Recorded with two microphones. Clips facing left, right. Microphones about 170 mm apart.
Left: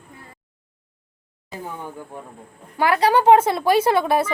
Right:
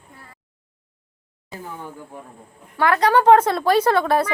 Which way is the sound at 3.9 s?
20° left (ahead or behind).